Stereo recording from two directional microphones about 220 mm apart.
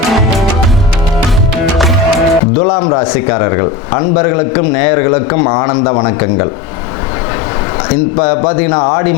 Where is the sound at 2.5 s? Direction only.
25° left (ahead or behind).